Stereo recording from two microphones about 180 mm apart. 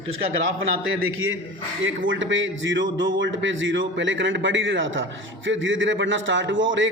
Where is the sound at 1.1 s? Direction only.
90° right.